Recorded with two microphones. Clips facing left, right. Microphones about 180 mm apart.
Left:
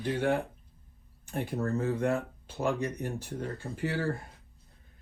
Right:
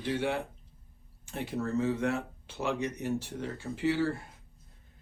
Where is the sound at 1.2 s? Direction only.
55° left (ahead or behind).